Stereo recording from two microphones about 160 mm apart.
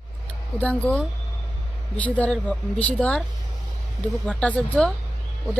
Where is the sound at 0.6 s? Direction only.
10° left (ahead or behind).